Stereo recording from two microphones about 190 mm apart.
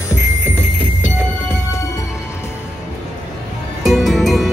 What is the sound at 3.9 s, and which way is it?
Music, centre (ahead or behind).